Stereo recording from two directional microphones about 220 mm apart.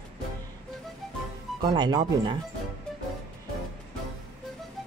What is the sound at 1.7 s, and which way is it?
Speech, 20° right (ahead or behind).